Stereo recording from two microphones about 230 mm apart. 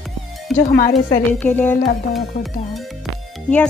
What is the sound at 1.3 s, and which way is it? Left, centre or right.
Speech, centre.